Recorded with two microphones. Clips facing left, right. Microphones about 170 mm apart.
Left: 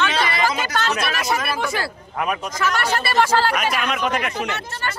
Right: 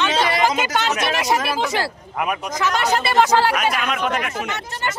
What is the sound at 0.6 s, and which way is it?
Speech, 20° right (ahead or behind).